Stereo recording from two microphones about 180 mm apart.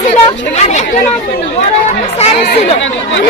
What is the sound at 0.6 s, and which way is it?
Speech, 40° left (ahead or behind).